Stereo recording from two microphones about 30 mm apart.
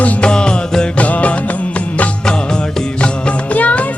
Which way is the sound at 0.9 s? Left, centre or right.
Left.